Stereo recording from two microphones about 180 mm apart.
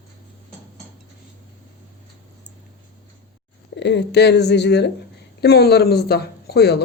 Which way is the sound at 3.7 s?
75° left (ahead or behind).